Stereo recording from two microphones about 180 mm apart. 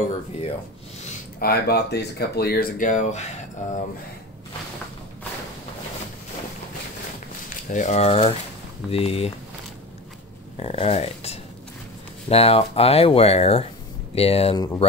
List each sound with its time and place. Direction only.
1.4 s speech: 60° left (ahead or behind); by 3.7 s 40° left (ahead or behind)
7.4 s speech: 45° left (ahead or behind)
10.6 s speech: 35° left (ahead or behind)